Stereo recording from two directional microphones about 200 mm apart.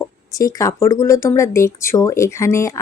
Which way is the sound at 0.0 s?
15° left (ahead or behind).